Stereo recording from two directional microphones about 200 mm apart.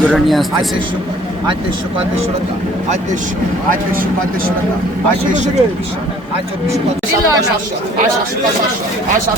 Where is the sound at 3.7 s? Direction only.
45° right (ahead or behind).